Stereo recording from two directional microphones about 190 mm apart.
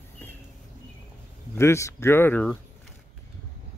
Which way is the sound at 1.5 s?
15° left (ahead or behind).